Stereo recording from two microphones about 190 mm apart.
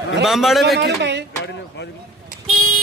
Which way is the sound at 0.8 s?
65° right (ahead or behind).